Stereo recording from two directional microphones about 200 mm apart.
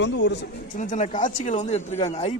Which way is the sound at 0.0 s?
60° left (ahead or behind).